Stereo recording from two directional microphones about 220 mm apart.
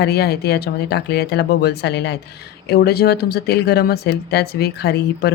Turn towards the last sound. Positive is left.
turn(degrees=45)  # may be behind; listen again after turning